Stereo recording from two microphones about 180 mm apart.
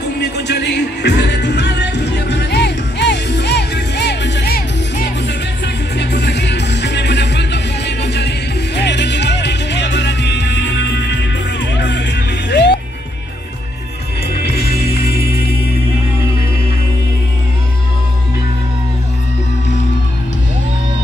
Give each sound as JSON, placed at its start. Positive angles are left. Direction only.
{"t": 0.0, "sound": "music", "side_deg": 70}
{"t": 5.9, "sound": "music", "side_deg": 70}
{"t": 14.3, "sound": "music", "side_deg": 60}